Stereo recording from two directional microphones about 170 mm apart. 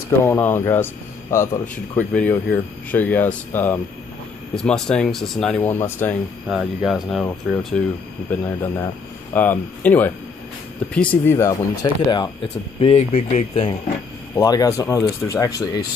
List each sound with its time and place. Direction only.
0.2 s speech: 15° left (ahead or behind)
2.0 s speech: 10° left (ahead or behind)
6.4 s speech: 5° right (ahead or behind); by 12.3 s 25° left (ahead or behind)
12.8 s speech: 35° left (ahead or behind)
14.3 s speech: 20° left (ahead or behind)